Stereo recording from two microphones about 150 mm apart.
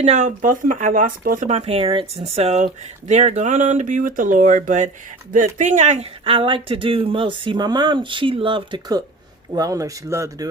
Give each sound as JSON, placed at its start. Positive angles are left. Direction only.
{"t": 0.0, "sound": "speech", "side_deg": -50}
{"t": 1.5, "sound": "speech", "side_deg": -45}